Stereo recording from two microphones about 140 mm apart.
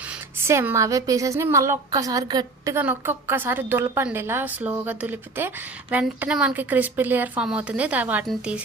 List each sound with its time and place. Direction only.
0.4 s a woman's voice: 20° right (ahead or behind)
2.7 s a woman's voice: 15° right (ahead or behind)